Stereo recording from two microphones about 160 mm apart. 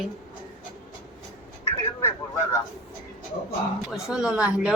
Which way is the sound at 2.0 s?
15° left (ahead or behind).